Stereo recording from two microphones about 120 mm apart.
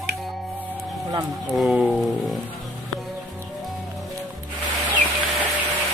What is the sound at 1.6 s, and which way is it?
Speech, 5° right (ahead or behind).